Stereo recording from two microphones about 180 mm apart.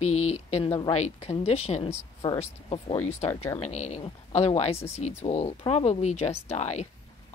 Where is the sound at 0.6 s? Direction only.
20° left (ahead or behind).